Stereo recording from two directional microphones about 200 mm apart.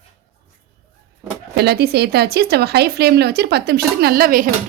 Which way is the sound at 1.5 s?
55° right (ahead or behind).